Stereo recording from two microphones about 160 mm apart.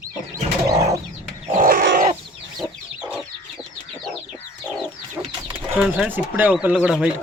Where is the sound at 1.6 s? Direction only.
65° right (ahead or behind).